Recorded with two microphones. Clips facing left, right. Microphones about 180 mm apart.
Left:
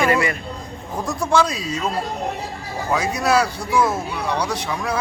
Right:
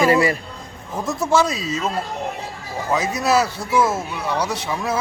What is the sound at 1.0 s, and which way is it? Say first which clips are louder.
Speech: right 1 dB; 5° right (ahead or behind).